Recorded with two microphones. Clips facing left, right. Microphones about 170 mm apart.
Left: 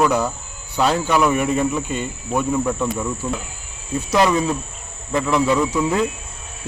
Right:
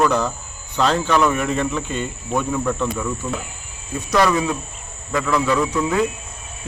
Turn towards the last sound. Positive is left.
turn(degrees=5)  # may be behind; listen again after turning